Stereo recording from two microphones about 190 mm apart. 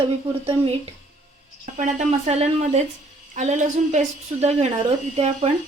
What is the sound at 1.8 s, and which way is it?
A woman's voice, 35° right (ahead or behind).